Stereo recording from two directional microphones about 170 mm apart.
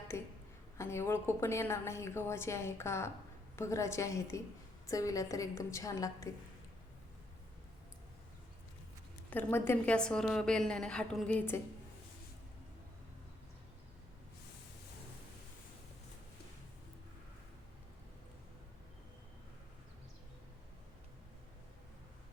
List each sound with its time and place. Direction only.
0.1 s a sound: 15° left (ahead or behind)
0.8 s a woman's voice: 15° left (ahead or behind)
9.3 s a woman's voice: 10° left (ahead or behind)